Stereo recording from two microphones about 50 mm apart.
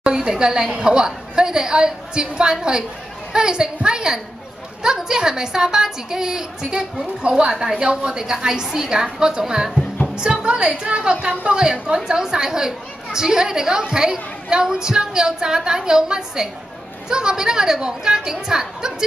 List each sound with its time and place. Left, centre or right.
0.0 s a woman's voice: centre